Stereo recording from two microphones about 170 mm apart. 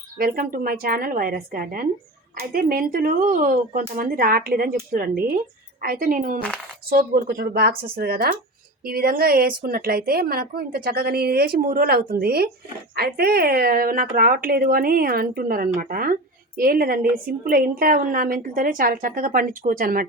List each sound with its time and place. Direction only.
0.2 s a woman's voice: 55° right (ahead or behind)
6.9 s a woman's voice: 70° right (ahead or behind)